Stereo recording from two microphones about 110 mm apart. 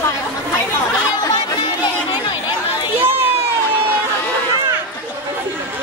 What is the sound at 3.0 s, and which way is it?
Run, 20° right (ahead or behind).